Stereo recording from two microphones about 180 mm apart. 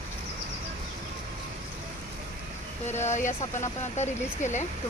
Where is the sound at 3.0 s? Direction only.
45° left (ahead or behind).